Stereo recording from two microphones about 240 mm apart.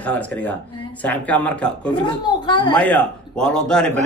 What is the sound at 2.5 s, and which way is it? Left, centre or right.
Speech, centre.